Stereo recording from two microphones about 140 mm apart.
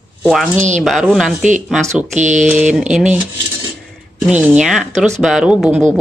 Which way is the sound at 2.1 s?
60° right (ahead or behind).